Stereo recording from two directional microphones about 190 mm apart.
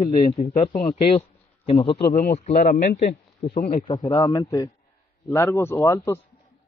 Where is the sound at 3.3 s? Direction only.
30° left (ahead or behind).